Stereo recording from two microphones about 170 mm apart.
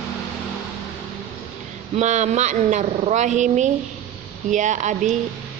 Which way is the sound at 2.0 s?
45° right (ahead or behind).